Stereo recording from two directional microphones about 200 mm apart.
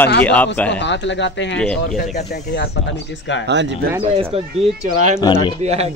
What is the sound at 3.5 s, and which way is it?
Speech, 60° right (ahead or behind).